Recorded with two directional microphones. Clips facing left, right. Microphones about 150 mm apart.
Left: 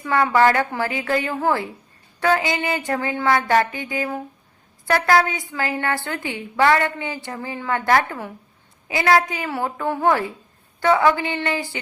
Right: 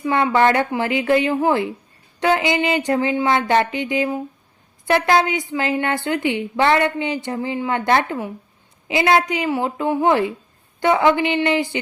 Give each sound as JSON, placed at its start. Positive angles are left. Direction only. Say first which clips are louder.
{"t": 0.0, "sound": "a woman's voice", "louder": "right 1 dB", "side_deg": -20}